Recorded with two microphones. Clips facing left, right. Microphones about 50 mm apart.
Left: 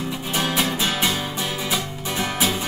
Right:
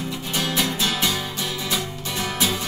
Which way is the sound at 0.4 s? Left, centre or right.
Centre.